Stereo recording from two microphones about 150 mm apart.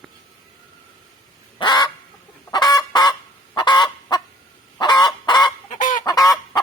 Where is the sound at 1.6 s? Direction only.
30° left (ahead or behind).